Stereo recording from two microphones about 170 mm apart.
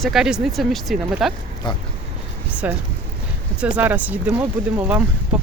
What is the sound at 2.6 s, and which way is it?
Speech, 10° right (ahead or behind).